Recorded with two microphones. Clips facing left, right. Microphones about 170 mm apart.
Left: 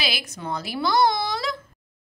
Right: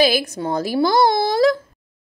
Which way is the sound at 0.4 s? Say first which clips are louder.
Right 7 dB; 40° right (ahead or behind).